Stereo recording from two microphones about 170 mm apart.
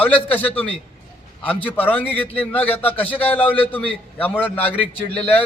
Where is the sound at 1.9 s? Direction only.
10° left (ahead or behind).